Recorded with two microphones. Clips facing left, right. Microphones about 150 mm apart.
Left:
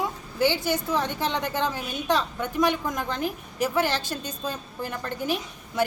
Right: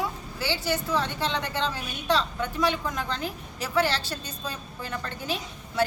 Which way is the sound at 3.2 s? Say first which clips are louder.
Left 6 dB; 50° left (ahead or behind).